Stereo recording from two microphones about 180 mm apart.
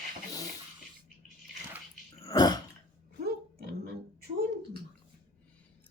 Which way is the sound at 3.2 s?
60° right (ahead or behind).